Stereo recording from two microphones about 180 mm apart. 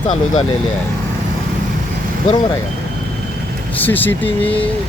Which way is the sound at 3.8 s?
10° left (ahead or behind).